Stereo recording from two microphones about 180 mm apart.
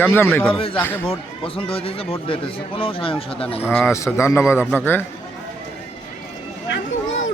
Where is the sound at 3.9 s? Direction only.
15° left (ahead or behind).